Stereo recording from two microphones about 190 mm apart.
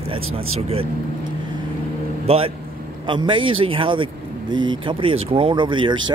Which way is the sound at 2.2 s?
30° right (ahead or behind).